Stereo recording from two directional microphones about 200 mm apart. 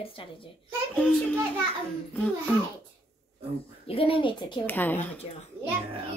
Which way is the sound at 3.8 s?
25° left (ahead or behind).